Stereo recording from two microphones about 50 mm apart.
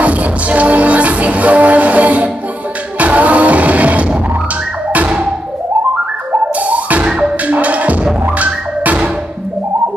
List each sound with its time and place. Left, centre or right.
0.0 s music: right
6.5 s music: right
7.1 s music: centre
7.4 s music: right